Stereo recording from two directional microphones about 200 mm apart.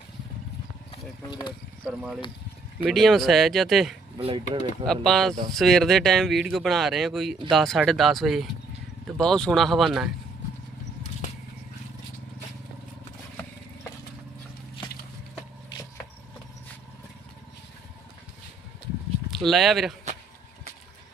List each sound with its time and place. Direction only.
0.9 s speech: 20° left (ahead or behind)
1.8 s speech: centre (ahead or behind)
4.2 s speech: 25° right (ahead or behind)
4.9 s speech: centre (ahead or behind)
19.3 s speech: centre (ahead or behind)